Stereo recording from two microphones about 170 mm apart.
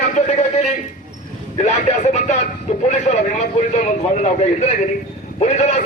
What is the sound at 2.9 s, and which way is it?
A man's voice, 45° left (ahead or behind).